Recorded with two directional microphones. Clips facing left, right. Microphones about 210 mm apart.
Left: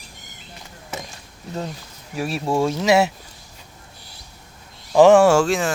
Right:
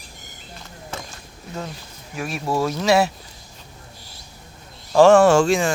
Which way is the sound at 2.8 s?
20° left (ahead or behind).